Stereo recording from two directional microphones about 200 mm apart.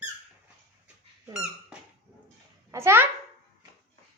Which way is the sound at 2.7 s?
15° right (ahead or behind).